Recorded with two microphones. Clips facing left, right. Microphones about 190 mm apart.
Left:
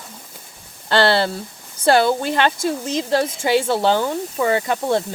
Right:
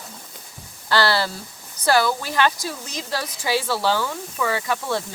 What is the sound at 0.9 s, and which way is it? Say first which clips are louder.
Speech: left 4 dB; 25° left (ahead or behind).